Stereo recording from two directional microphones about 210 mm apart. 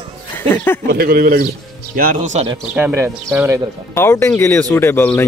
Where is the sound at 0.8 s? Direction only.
45° right (ahead or behind).